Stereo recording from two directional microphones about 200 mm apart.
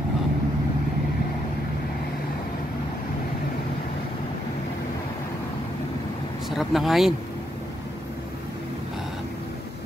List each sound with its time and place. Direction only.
6.5 s speech: centre (ahead or behind)